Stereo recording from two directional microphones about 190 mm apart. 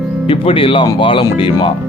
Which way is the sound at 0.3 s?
30° left (ahead or behind).